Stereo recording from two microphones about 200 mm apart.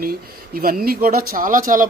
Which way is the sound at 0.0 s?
45° right (ahead or behind).